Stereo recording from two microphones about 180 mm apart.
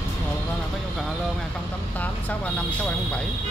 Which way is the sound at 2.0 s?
10° left (ahead or behind).